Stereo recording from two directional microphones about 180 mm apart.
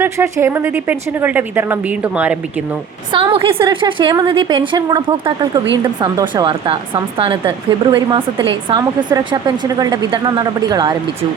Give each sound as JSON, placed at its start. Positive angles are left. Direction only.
{"t": 0.0, "sound": "speech", "side_deg": -15}
{"t": 3.1, "sound": "speech", "side_deg": -30}